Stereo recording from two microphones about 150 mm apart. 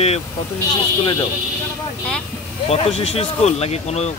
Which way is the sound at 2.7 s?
45° left (ahead or behind).